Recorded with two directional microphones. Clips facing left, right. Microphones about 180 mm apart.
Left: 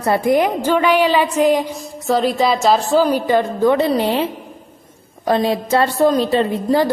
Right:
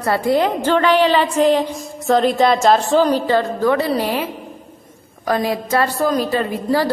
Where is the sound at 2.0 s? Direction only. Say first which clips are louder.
Right 2 dB; centre (ahead or behind).